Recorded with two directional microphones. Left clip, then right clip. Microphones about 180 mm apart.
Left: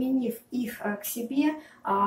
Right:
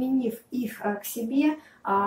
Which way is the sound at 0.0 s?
15° left (ahead or behind).